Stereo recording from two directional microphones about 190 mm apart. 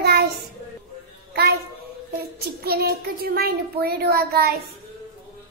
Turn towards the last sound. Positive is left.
turn(degrees=-55)  # may be behind; listen again after turning